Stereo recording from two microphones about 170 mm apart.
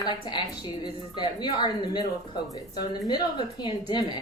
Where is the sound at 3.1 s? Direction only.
25° left (ahead or behind).